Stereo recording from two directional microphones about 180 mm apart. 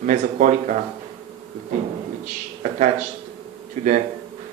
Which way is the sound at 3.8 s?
40° right (ahead or behind).